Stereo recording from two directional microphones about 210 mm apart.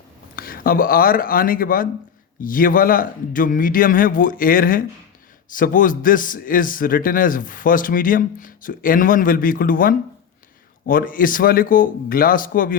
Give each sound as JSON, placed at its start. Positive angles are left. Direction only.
{"t": 0.3, "sound": "a man's voice", "side_deg": 45}